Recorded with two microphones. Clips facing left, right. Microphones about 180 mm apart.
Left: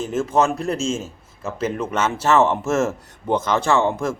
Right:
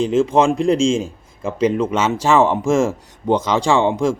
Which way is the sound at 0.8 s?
15° right (ahead or behind).